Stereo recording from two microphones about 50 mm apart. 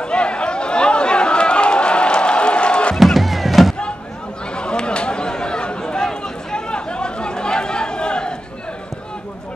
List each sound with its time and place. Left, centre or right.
0.0 s chatter: centre
3.0 s music: centre
4.6 s chatter: centre